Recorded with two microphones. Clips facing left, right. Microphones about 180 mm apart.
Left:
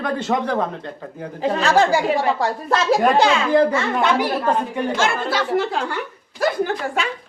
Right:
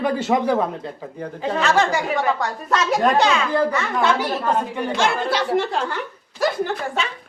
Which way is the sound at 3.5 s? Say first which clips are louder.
Left 4 dB; 20° left (ahead or behind).